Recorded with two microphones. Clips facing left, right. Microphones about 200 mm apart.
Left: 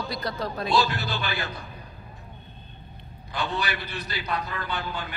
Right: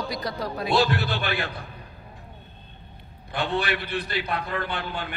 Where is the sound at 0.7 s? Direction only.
55° right (ahead or behind).